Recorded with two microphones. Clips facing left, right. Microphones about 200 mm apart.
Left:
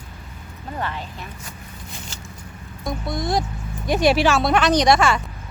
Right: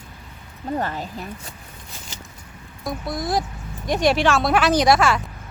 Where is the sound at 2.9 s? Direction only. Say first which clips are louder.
Left 1 dB; centre (ahead or behind).